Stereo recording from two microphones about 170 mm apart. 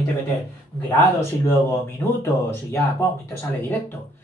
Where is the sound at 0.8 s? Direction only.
15° left (ahead or behind).